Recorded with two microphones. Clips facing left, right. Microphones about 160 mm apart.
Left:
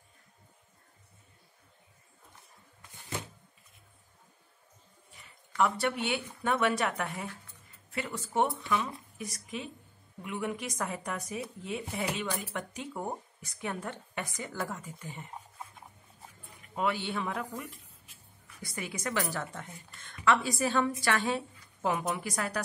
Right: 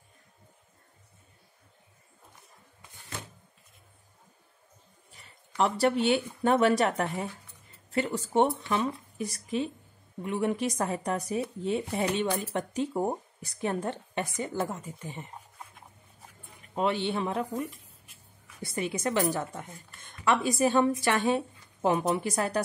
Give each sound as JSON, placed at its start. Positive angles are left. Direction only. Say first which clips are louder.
{"t": 5.6, "sound": "a woman's voice", "louder": "right 4 dB", "side_deg": -35}
{"t": 16.7, "sound": "a woman's voice", "louder": "right 4 dB", "side_deg": -25}